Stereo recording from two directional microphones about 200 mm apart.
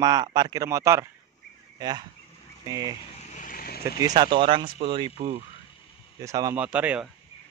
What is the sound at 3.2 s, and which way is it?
Vehicle, 35° left (ahead or behind).